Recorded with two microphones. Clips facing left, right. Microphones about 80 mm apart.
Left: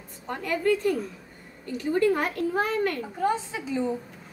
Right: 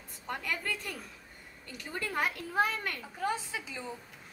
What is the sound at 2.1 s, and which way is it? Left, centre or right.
A child's voice, centre.